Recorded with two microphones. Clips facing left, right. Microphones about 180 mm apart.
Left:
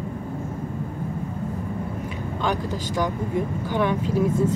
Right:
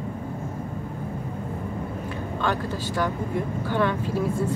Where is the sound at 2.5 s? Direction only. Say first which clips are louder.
Left 2 dB; 15° left (ahead or behind).